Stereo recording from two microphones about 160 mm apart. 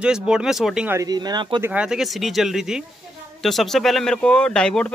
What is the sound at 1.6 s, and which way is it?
Speech, 5° right (ahead or behind).